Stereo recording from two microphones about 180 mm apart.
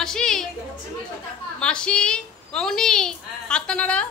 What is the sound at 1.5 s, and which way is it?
A woman's voice, 5° left (ahead or behind).